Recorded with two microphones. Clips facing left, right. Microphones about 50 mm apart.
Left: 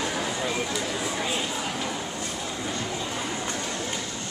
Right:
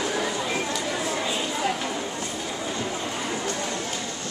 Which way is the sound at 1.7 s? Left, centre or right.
Centre.